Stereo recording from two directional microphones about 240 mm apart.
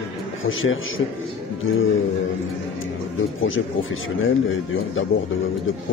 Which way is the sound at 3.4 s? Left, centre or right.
Left.